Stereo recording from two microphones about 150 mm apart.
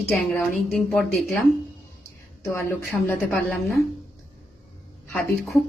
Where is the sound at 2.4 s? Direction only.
15° left (ahead or behind).